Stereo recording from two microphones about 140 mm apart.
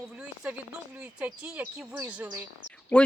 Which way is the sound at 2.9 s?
10° left (ahead or behind).